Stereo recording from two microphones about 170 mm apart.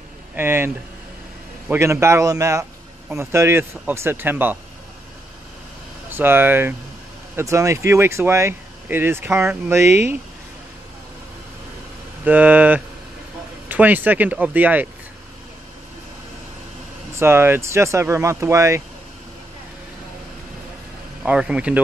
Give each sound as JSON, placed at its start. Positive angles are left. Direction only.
{"t": 0.3, "sound": "speech", "side_deg": -15}
{"t": 1.7, "sound": "speech", "side_deg": -15}
{"t": 6.0, "sound": "speech", "side_deg": -10}
{"t": 12.3, "sound": "speech", "side_deg": -10}
{"t": 17.2, "sound": "speech", "side_deg": -15}
{"t": 21.2, "sound": "speech", "side_deg": -5}